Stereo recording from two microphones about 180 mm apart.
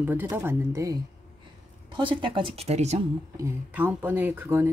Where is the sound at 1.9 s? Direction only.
25° right (ahead or behind).